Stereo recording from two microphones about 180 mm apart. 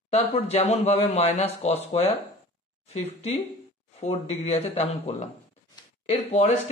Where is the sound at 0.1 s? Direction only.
35° left (ahead or behind).